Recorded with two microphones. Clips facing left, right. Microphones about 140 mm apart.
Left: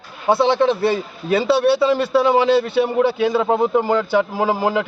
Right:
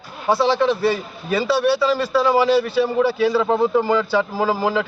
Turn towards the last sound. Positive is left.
turn(degrees=15)  # may be behind; listen again after turning